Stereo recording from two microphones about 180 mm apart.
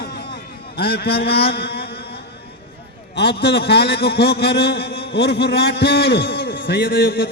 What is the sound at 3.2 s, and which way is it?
A man's voice, 65° left (ahead or behind).